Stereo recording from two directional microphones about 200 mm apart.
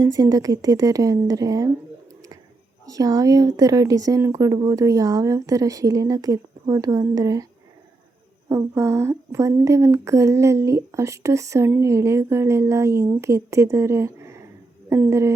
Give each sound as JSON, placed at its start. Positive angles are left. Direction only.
{"t": 0.0, "sound": "speech", "side_deg": -20}
{"t": 2.9, "sound": "speech", "side_deg": -15}
{"t": 8.4, "sound": "speech", "side_deg": -15}